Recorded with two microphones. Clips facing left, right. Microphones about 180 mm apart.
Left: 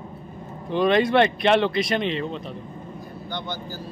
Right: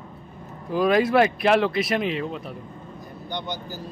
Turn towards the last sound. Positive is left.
turn(degrees=-20)  # may be behind; listen again after turning